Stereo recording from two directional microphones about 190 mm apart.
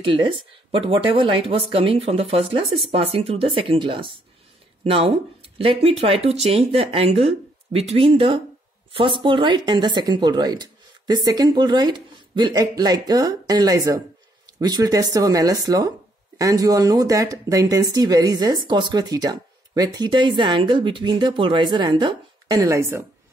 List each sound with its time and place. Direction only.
0.0 s speech: 25° right (ahead or behind)